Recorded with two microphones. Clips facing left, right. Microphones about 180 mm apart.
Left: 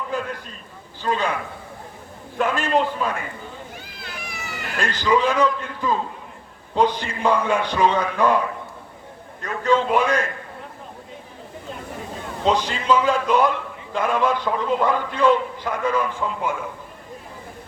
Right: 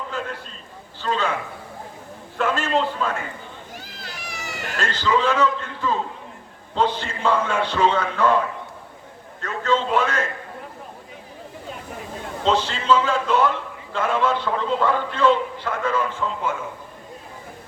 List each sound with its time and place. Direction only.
0.1 s a sound: 15° left (ahead or behind)
1.0 s a man's voice: 15° left (ahead or behind)
2.4 s a man's voice: 15° left (ahead or behind)
4.0 s a sound: 40° right (ahead or behind)
4.8 s a man's voice: 15° left (ahead or behind)
9.4 s a man's voice: 15° left (ahead or behind)
12.5 s a man's voice: 15° left (ahead or behind)